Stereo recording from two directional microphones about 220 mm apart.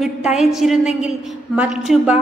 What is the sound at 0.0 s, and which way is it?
A woman's voice, centre (ahead or behind).